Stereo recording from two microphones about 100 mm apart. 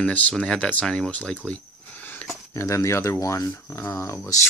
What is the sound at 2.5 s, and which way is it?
Speech, 30° left (ahead or behind).